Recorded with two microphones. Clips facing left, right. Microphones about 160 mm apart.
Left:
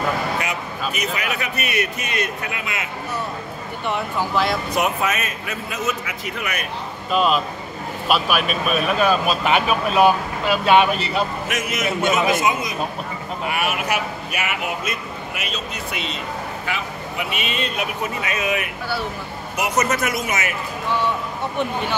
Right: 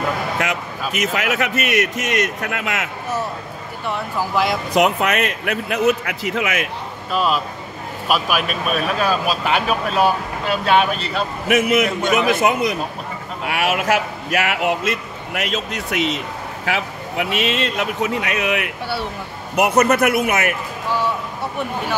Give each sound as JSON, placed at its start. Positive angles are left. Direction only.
{"t": 0.4, "sound": "a man's voice", "side_deg": -90}
{"t": 3.8, "sound": "speech", "side_deg": 0}
{"t": 4.7, "sound": "a man's voice", "side_deg": -75}
{"t": 7.1, "sound": "speech", "side_deg": 0}
{"t": 11.4, "sound": "a man's voice", "side_deg": -60}
{"t": 13.5, "sound": "a man's voice", "side_deg": -90}
{"t": 19.5, "sound": "a man's voice", "side_deg": -60}